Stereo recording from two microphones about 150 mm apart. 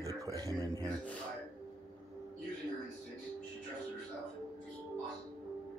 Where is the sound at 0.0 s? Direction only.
20° right (ahead or behind).